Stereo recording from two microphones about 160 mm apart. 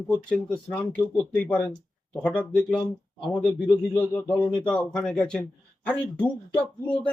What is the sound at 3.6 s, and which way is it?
A man's voice, 10° left (ahead or behind).